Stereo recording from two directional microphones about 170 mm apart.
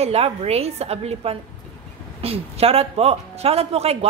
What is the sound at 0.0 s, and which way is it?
A man's voice, 40° right (ahead or behind).